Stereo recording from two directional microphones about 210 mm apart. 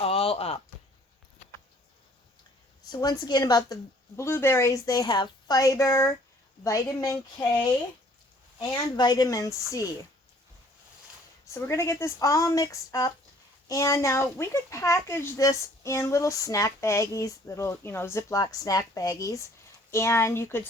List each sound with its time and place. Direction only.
0.0 s a sound: 30° left (ahead or behind)
2.9 s speech: 15° left (ahead or behind)
11.4 s speech: 15° left (ahead or behind)